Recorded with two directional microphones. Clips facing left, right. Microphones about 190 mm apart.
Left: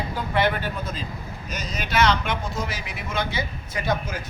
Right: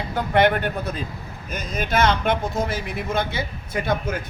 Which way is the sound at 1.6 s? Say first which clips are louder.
Right 2 dB; 50° right (ahead or behind).